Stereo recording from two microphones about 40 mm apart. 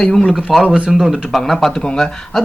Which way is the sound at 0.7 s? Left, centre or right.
Right.